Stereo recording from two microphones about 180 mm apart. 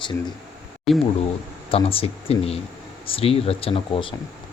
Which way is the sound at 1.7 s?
30° left (ahead or behind).